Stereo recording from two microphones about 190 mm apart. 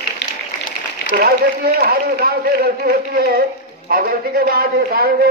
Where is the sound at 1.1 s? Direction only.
50° right (ahead or behind).